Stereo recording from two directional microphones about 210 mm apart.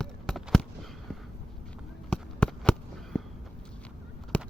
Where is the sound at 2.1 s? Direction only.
5° left (ahead or behind).